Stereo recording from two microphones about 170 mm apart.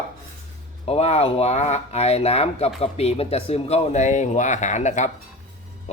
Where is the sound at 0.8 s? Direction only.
35° left (ahead or behind).